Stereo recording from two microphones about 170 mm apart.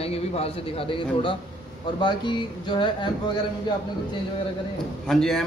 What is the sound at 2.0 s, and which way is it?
Speech, 25° left (ahead or behind).